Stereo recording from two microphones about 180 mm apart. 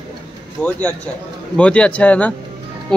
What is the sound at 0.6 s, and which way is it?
A man's voice, 5° left (ahead or behind).